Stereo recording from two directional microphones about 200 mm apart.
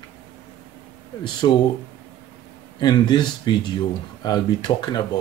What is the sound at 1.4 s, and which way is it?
Speech, 25° left (ahead or behind).